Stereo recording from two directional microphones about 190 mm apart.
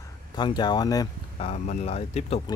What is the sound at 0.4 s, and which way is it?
Speech, 25° left (ahead or behind).